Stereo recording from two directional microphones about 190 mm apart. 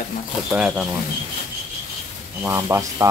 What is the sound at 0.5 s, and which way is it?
Speech, 5° right (ahead or behind).